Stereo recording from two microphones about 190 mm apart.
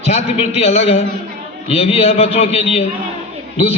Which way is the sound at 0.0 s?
35° left (ahead or behind).